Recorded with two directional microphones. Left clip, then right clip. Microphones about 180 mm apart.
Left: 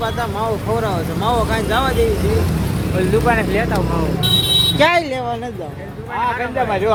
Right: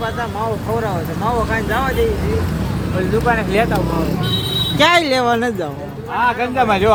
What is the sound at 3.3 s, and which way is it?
Speech, 15° left (ahead or behind).